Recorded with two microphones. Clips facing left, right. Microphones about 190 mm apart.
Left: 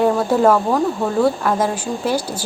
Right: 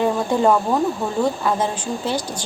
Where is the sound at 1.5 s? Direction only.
10° left (ahead or behind).